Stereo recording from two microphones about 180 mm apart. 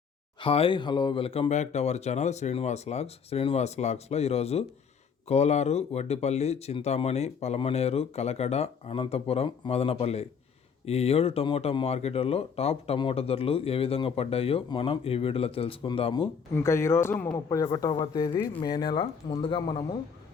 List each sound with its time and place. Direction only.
0.3 s speech: 30° left (ahead or behind)
16.6 s speech: 15° left (ahead or behind)